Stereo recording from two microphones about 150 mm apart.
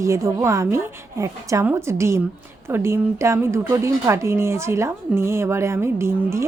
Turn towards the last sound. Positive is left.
turn(degrees=-15)  # may be behind; listen again after turning